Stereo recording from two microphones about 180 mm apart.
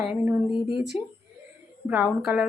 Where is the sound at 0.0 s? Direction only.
5° right (ahead or behind).